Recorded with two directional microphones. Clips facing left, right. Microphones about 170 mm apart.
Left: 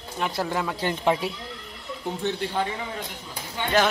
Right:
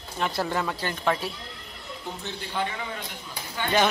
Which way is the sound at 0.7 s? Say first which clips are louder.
Left 3 dB; 20° left (ahead or behind).